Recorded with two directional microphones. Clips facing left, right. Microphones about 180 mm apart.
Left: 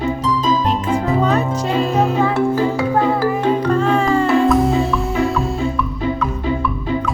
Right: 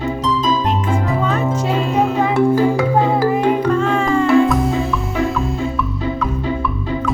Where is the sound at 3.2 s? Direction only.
20° right (ahead or behind).